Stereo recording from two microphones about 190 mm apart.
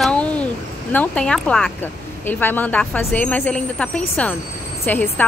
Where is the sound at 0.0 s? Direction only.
5° left (ahead or behind).